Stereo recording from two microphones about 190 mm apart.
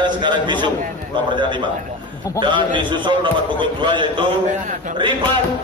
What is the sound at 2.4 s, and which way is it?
A man's voice, 25° right (ahead or behind).